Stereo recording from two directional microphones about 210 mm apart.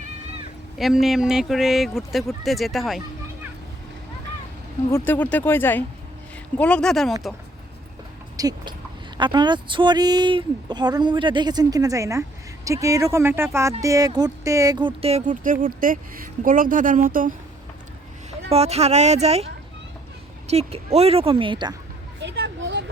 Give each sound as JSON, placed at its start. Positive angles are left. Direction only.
{"t": 0.8, "sound": "speech", "side_deg": 0}
{"t": 4.9, "sound": "speech", "side_deg": 10}
{"t": 8.4, "sound": "speech", "side_deg": -20}
{"t": 18.5, "sound": "speech", "side_deg": -30}
{"t": 20.5, "sound": "speech", "side_deg": -30}
{"t": 22.2, "sound": "a sound", "side_deg": -55}